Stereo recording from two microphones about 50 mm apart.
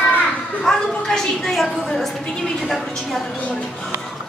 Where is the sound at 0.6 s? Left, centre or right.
Centre.